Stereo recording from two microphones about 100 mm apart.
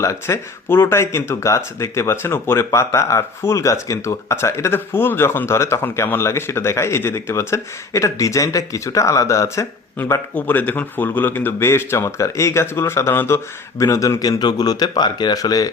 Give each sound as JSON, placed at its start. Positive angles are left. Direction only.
{"t": 0.0, "sound": "speech", "side_deg": 30}
{"t": 10.0, "sound": "speech", "side_deg": 15}